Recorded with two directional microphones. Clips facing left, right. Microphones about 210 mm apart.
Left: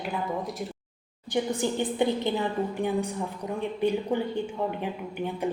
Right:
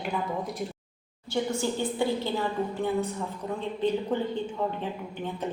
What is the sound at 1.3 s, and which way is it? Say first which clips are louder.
A woman's voice: left 1 dB; 15° left (ahead or behind).